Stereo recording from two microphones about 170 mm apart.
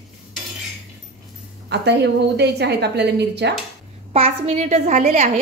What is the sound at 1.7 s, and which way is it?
A woman's voice, 80° right.